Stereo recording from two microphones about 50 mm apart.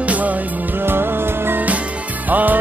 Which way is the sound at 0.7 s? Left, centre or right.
Right.